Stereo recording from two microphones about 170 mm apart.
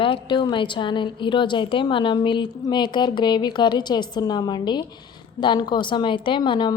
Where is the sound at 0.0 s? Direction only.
30° left (ahead or behind).